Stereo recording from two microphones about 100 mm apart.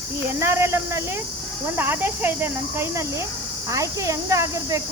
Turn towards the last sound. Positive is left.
turn(degrees=-30)  # may be behind; listen again after turning